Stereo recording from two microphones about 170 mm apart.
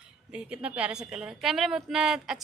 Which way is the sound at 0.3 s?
5° right (ahead or behind).